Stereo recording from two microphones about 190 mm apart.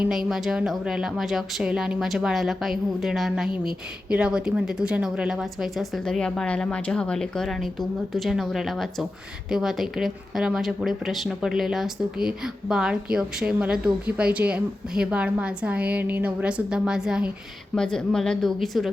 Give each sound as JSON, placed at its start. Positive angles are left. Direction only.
{"t": 0.0, "sound": "a woman's voice", "side_deg": 0}